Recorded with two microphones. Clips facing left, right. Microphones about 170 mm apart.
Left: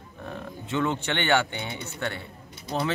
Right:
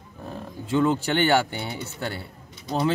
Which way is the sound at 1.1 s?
40° right (ahead or behind).